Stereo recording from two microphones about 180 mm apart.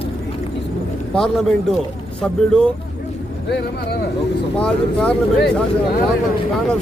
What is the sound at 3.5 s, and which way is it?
Speech, 70° left (ahead or behind).